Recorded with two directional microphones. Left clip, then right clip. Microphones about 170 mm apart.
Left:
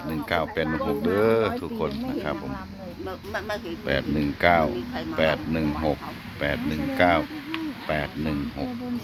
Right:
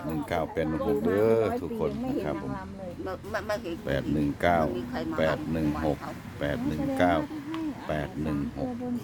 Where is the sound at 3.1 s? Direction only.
50° right (ahead or behind).